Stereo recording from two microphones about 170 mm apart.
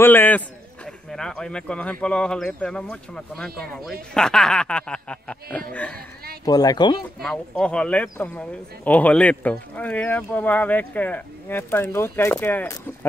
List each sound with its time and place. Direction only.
0.0 s a man's voice: 10° left (ahead or behind)
6.4 s speech: 20° left (ahead or behind)
7.2 s speech: 5° left (ahead or behind)